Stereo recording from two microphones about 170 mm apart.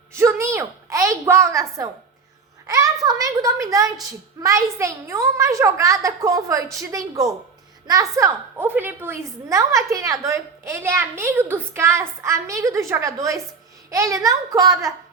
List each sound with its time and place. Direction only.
0.1 s a woman's voice: 15° right (ahead or behind)